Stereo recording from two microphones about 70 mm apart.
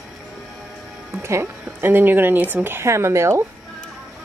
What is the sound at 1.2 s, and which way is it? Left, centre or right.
Speech, right.